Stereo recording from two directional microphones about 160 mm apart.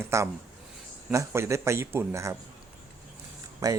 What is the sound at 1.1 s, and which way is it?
Speech, 15° right (ahead or behind).